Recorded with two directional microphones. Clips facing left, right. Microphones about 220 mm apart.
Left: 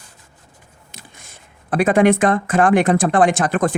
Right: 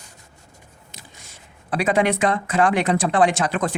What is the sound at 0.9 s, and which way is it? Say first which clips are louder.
Speech: left 3 dB; 55° left (ahead or behind).